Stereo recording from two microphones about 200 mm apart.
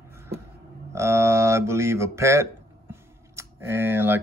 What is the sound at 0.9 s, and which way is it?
Speech, 15° right (ahead or behind).